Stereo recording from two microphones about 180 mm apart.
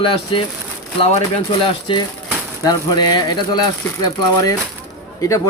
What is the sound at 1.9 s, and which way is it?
Speech, 30° left (ahead or behind).